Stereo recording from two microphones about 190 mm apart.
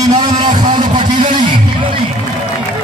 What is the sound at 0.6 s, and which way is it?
Vehicle, 25° right (ahead or behind).